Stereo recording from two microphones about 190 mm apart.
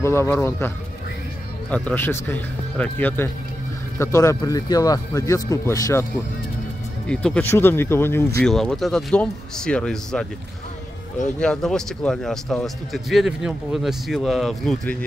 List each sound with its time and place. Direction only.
0.0 s speech: 15° left (ahead or behind)
7.1 s speech: 5° left (ahead or behind)
11.3 s speech: 5° left (ahead or behind)